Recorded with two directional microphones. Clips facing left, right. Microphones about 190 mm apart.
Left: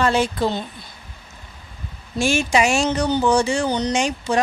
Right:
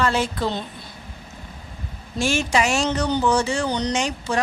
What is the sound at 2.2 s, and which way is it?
Speech, 10° left (ahead or behind).